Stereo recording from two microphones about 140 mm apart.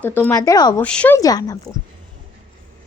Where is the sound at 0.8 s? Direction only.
10° left (ahead or behind).